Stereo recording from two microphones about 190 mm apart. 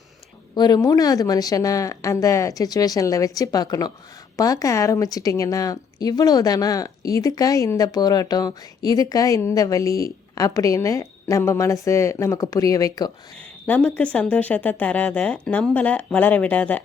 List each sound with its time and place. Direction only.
0.5 s a woman's voice: 20° left (ahead or behind)
13.7 s a woman's voice: 10° left (ahead or behind)